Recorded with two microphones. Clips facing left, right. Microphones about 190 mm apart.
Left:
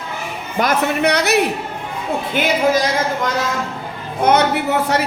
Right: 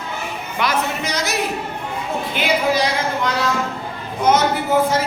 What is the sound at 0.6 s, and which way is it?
Speech, 40° left (ahead or behind).